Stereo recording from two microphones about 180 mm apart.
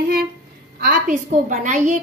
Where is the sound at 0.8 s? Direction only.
45° right (ahead or behind).